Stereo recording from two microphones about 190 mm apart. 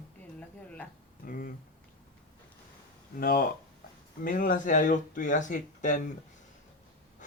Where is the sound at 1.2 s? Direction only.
45° left (ahead or behind).